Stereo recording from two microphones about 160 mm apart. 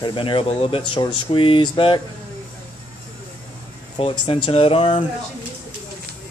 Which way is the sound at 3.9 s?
30° left (ahead or behind).